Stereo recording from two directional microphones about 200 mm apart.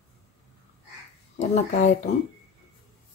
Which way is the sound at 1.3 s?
35° left (ahead or behind).